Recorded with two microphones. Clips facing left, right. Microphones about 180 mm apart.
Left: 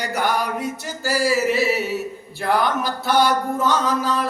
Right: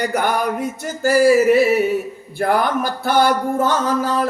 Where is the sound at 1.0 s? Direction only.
55° right (ahead or behind).